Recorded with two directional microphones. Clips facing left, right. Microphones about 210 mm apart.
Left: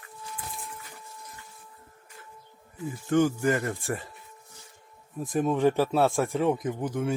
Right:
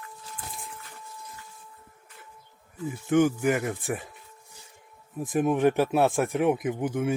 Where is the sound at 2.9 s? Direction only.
15° right (ahead or behind).